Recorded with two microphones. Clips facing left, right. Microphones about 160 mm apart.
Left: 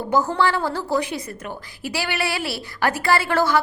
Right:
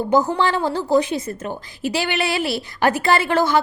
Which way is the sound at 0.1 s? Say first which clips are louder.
Right 1 dB; 20° right (ahead or behind).